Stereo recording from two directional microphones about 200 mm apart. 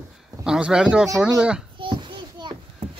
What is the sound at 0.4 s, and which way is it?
Speech, 5° right (ahead or behind).